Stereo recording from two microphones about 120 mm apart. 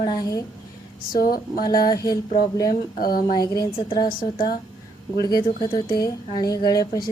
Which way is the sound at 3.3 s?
35° left (ahead or behind).